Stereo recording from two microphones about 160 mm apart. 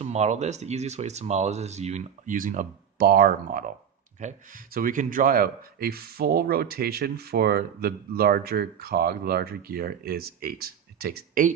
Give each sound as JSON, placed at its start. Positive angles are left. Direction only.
{"t": 0.0, "sound": "speech", "side_deg": -45}